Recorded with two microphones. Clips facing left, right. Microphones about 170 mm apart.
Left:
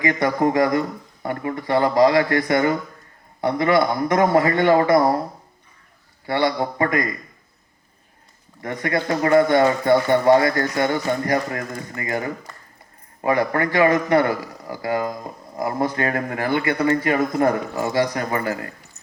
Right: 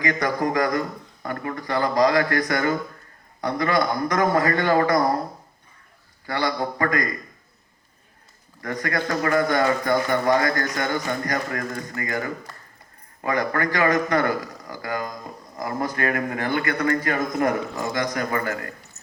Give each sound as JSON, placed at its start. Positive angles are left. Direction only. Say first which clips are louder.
{"t": 0.0, "sound": "speech", "louder": "left 4 dB", "side_deg": 25}
{"t": 6.2, "sound": "speech", "louder": "left 4 dB", "side_deg": 25}
{"t": 8.6, "sound": "speech", "louder": "left 3 dB", "side_deg": 25}